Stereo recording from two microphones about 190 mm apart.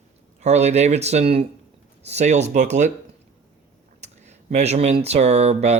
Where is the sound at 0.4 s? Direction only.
35° right (ahead or behind).